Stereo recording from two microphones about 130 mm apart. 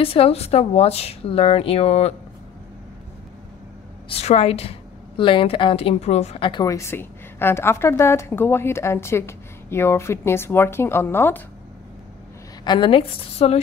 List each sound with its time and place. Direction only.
0.0 s a woman's voice: 45° left (ahead or behind)
4.1 s a woman's voice: 50° left (ahead or behind)
6.6 s a woman's voice: 25° left (ahead or behind)
12.6 s speech: 35° left (ahead or behind)